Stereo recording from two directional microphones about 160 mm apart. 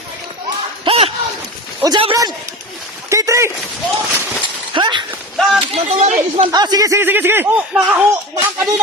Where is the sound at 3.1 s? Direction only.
20° right (ahead or behind).